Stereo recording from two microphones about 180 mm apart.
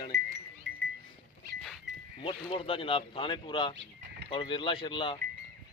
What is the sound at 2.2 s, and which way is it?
Speech, 30° left (ahead or behind).